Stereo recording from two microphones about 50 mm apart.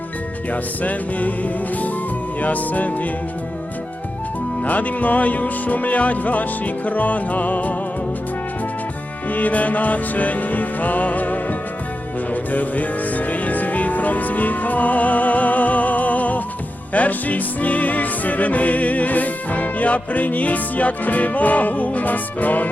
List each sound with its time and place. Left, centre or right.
0.5 s music: left
4.6 s music: left
9.3 s music: left